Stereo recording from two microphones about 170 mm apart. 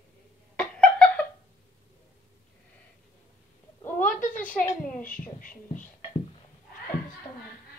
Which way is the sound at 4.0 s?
50° left (ahead or behind).